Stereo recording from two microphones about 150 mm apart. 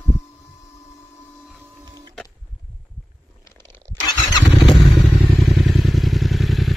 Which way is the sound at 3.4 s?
15° left (ahead or behind).